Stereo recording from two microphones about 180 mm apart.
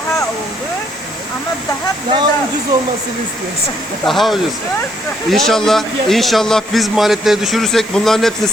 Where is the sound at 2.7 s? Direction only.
20° right (ahead or behind).